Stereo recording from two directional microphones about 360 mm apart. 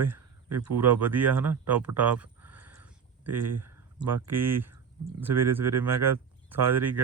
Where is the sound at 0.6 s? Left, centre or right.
Right.